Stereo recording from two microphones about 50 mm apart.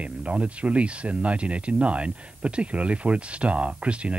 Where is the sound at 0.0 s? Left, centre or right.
Right.